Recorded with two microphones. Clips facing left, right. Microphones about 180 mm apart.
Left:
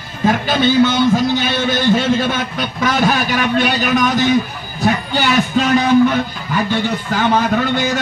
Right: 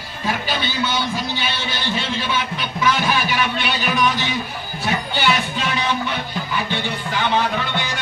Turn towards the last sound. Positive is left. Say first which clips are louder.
# left 6 dB
turn(degrees=45)  # may be behind; listen again after turning